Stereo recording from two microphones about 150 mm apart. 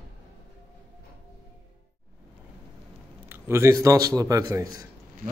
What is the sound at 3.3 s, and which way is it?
A man's voice, 15° right (ahead or behind).